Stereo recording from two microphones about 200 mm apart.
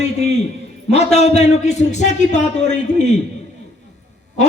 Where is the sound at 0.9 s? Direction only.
30° left (ahead or behind).